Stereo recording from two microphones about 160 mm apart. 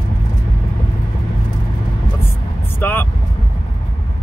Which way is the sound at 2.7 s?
15° left (ahead or behind).